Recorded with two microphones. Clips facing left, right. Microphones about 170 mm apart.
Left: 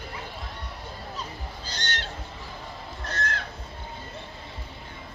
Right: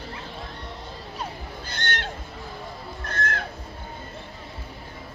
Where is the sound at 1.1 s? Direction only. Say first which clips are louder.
Right 3 dB; 55° right (ahead or behind).